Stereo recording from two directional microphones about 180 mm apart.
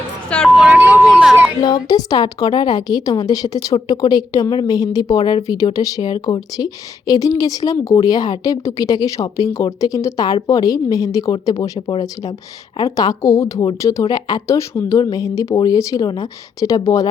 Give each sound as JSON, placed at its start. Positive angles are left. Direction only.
{"t": 0.3, "sound": "speech", "side_deg": 5}
{"t": 0.7, "sound": "a sound", "side_deg": -10}
{"t": 1.1, "sound": "speech", "side_deg": 0}
{"t": 1.6, "sound": "a woman's voice", "side_deg": 20}